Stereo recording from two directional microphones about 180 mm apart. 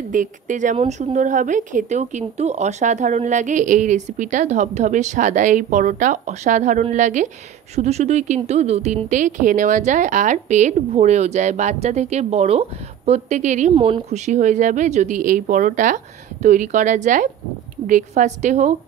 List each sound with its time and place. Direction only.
0.1 s a woman's voice: 45° right (ahead or behind)
13.7 s a woman's voice: 30° right (ahead or behind)